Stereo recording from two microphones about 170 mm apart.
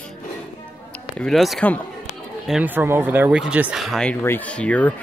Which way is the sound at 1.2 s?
Centre (ahead or behind).